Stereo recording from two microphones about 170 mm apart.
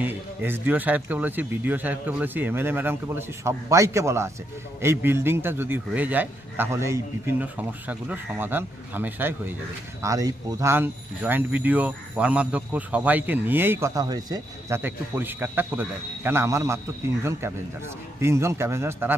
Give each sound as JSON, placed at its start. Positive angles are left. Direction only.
{"t": 0.0, "sound": "speech", "side_deg": -10}
{"t": 14.8, "sound": "speech", "side_deg": -10}